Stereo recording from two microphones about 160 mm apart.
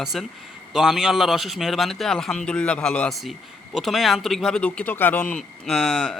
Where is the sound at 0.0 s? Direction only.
Centre (ahead or behind).